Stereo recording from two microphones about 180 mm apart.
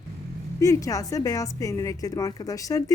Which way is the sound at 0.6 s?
20° left (ahead or behind).